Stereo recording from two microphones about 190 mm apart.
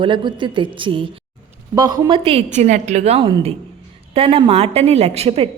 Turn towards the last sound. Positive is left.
turn(degrees=-35)  # may be behind; listen again after turning